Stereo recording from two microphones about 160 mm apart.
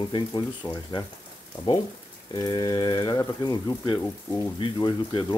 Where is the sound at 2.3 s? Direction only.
25° left (ahead or behind).